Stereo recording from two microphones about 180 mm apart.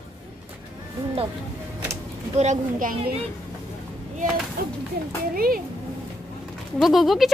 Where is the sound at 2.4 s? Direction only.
45° right (ahead or behind).